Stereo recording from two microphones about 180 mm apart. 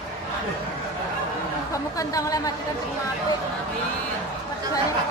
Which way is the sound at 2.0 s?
20° left (ahead or behind).